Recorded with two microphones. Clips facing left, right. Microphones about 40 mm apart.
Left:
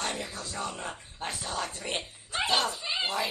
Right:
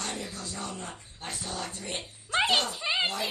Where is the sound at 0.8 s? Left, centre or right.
Left.